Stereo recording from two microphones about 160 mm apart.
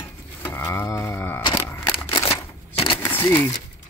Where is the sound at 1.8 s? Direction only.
20° left (ahead or behind).